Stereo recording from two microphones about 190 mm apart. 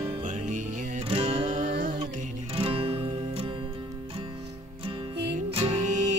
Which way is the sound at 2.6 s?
30° right (ahead or behind).